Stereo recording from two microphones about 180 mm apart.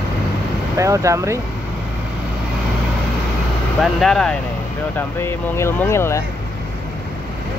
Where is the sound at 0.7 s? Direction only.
15° right (ahead or behind).